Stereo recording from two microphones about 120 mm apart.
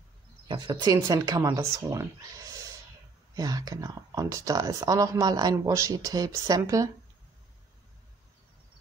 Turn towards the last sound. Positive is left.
turn(degrees=-30)  # may be behind; listen again after turning